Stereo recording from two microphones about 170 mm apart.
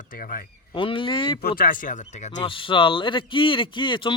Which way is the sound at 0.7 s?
30° left (ahead or behind).